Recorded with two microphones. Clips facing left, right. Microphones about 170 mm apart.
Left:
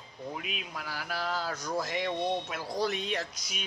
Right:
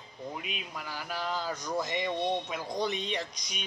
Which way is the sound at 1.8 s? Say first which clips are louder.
Right 1 dB; 5° left (ahead or behind).